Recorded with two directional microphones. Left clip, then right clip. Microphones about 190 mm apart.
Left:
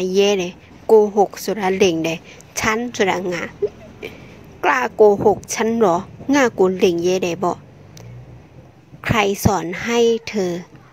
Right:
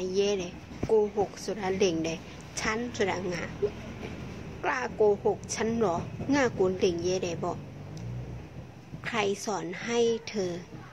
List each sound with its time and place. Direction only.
0.0 s a woman's voice: 50° left (ahead or behind)
4.6 s a woman's voice: 50° left (ahead or behind)
9.0 s a woman's voice: 45° left (ahead or behind)